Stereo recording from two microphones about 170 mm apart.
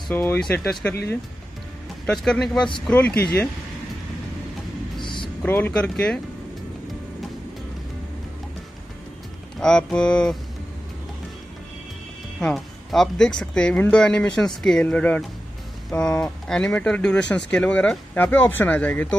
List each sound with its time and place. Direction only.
0.1 s speech: 15° left (ahead or behind)
2.2 s speech: centre (ahead or behind)
5.0 s music: 30° left (ahead or behind)
5.4 s speech: 10° left (ahead or behind)
9.6 s speech: 5° left (ahead or behind)
12.4 s speech: centre (ahead or behind)